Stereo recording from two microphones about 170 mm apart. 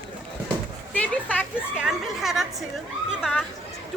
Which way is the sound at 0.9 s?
10° left (ahead or behind).